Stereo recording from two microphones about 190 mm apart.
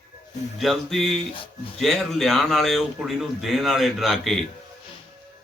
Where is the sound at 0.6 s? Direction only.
Centre (ahead or behind).